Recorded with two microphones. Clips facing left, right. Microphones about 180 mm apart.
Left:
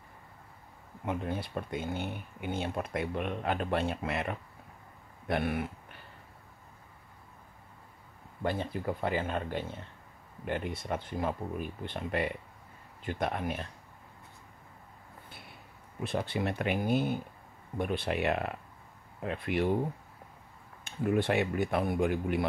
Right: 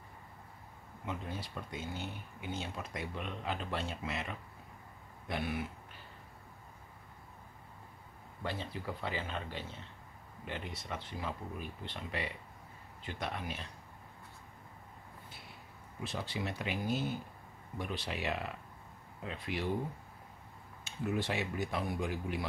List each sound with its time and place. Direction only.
1.0 s speech: 55° left (ahead or behind)
8.4 s speech: 50° left (ahead or behind)
16.0 s speech: 55° left (ahead or behind)
20.8 s speech: 55° left (ahead or behind)